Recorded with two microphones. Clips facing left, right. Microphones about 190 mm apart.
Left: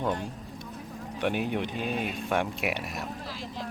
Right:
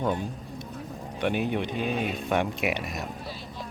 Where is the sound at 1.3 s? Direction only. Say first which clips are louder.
Right 3 dB; 50° right (ahead or behind).